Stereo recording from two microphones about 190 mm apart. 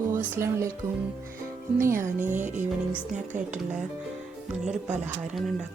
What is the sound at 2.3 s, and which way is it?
Music, 40° right (ahead or behind).